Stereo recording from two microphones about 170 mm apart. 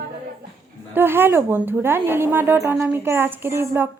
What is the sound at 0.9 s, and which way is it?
A woman's voice, 15° right (ahead or behind).